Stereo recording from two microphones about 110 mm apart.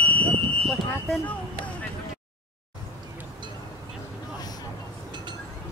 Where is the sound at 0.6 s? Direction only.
10° left (ahead or behind).